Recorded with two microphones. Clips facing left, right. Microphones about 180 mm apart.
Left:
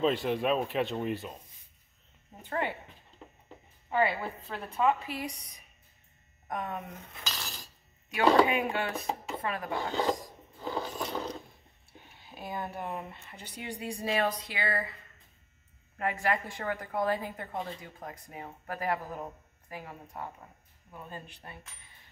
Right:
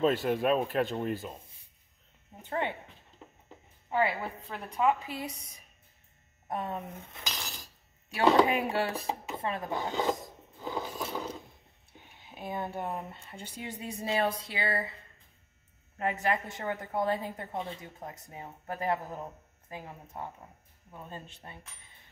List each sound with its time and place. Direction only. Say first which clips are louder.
0.0 s speech: right 1 dB; centre (ahead or behind)
3.9 s a woman's voice: left 1 dB; 15° right (ahead or behind)
8.2 s a woman's voice: even; 30° right (ahead or behind)
10.7 s a sound: left 1 dB; 10° right (ahead or behind)
12.2 s a woman's voice: right 1 dB; 20° right (ahead or behind)
16.0 s a woman's voice: even; 20° right (ahead or behind)